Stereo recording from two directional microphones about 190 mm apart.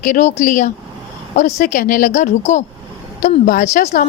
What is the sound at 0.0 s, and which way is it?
A woman's voice, 40° left (ahead or behind).